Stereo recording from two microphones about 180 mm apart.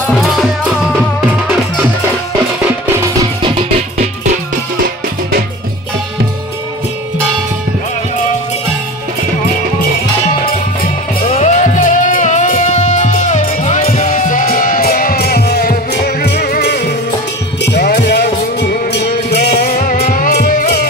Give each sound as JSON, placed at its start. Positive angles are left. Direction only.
{"t": 0.2, "sound": "music", "side_deg": 0}
{"t": 3.4, "sound": "music", "side_deg": -30}
{"t": 11.2, "sound": "music", "side_deg": 40}